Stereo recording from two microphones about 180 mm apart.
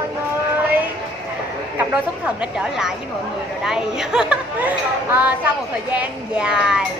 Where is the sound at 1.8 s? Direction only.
5° right (ahead or behind).